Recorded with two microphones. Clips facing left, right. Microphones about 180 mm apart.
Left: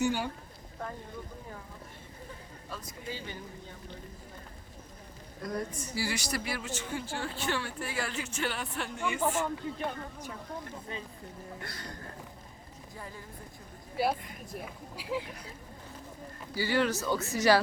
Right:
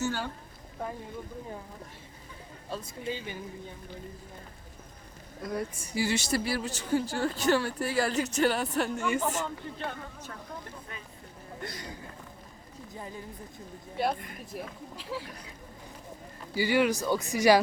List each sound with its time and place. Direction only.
0.0 s speech: 15° left (ahead or behind)
2.6 s speech: 30° right (ahead or behind)
5.4 s a woman's voice: 5° right (ahead or behind); by 9.4 s 40° right (ahead or behind)
9.7 s speech: 10° left (ahead or behind)
11.6 s speech: 20° right (ahead or behind)
12.9 s speech: 20° right (ahead or behind)
13.9 s speech: 5° left (ahead or behind)
14.9 s speech: 15° left (ahead or behind)
16.6 s speech: 15° right (ahead or behind)